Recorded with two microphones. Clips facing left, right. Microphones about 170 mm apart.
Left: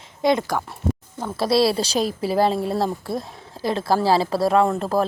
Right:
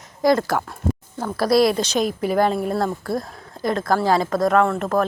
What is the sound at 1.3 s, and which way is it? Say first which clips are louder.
A woman's voice: right 2 dB; 25° left (ahead or behind).